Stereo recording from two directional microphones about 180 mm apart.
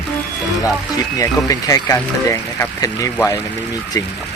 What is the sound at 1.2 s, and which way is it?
Speech, 20° left (ahead or behind).